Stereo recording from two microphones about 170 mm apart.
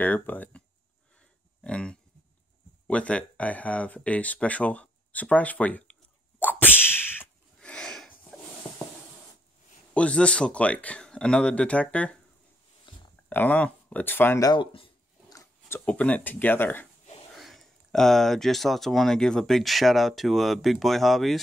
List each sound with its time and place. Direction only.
0.0 s speech: 10° left (ahead or behind)
1.6 s pig: 5° left (ahead or behind)
2.9 s speech: 5° left (ahead or behind)
6.6 s a sound: 10° left (ahead or behind)
9.9 s speech: 5° left (ahead or behind)
12.9 s a sound: 30° left (ahead or behind)
13.3 s speech: 10° left (ahead or behind)
14.5 s a sound: 30° left (ahead or behind)
15.3 s speech: 10° left (ahead or behind)
17.4 s speech: centre (ahead or behind)